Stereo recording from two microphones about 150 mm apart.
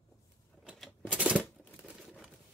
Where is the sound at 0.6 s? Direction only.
Centre (ahead or behind).